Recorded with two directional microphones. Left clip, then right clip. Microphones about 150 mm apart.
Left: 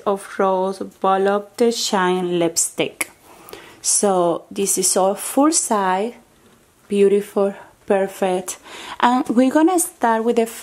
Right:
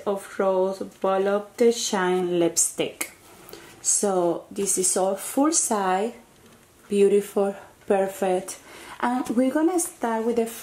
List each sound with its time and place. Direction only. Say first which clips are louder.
0.0 s speech: left 5 dB; 50° left (ahead or behind)